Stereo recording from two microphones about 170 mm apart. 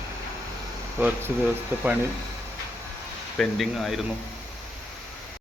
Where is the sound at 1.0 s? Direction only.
10° right (ahead or behind).